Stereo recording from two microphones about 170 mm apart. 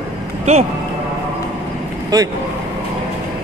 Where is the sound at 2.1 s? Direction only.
20° right (ahead or behind).